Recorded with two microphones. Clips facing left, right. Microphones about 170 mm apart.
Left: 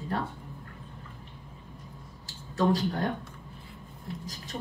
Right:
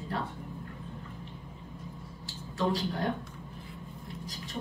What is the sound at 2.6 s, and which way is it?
Speech, 45° left (ahead or behind).